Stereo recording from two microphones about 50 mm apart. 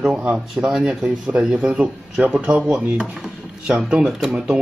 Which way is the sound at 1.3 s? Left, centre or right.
Right.